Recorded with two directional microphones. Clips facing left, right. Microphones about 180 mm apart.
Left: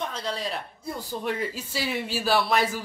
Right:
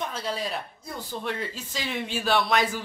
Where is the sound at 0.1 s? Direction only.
5° right (ahead or behind).